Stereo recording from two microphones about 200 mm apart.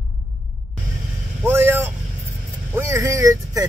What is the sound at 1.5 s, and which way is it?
Vehicle, 10° right (ahead or behind).